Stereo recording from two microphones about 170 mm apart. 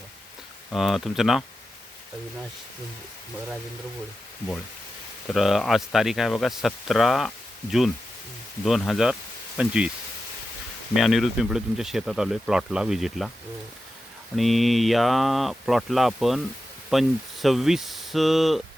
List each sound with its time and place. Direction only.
0.7 s speech: centre (ahead or behind)
5.3 s speech: centre (ahead or behind)
8.6 s speech: centre (ahead or behind)
10.9 s speech: centre (ahead or behind)
14.3 s speech: centre (ahead or behind)